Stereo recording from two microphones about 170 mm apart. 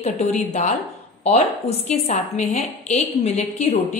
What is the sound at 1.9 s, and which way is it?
A woman's voice, 45° left (ahead or behind).